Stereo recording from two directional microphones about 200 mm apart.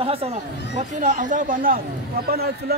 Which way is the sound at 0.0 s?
30° right (ahead or behind).